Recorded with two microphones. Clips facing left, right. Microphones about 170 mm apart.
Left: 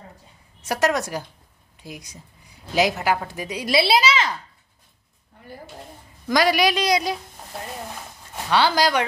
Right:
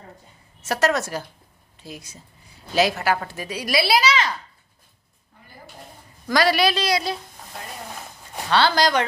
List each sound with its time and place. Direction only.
0.6 s a woman's voice: 15° left (ahead or behind)
6.2 s a woman's voice: 15° left (ahead or behind)
8.5 s a woman's voice: 10° left (ahead or behind)